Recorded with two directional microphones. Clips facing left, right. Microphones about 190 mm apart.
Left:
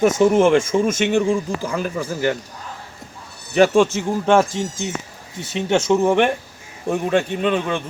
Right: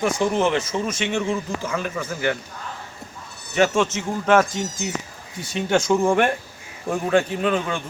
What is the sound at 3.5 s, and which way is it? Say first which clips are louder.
Speech: left 5 dB; 35° left (ahead or behind).